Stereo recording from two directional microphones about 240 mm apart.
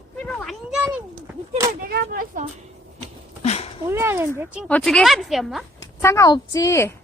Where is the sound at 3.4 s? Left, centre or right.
Left.